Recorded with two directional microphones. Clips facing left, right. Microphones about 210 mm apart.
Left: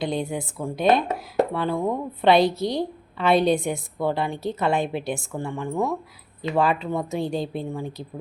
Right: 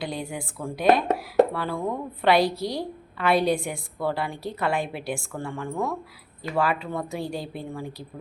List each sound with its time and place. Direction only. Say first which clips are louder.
0.0 s a woman's voice: left 5 dB; 20° left (ahead or behind)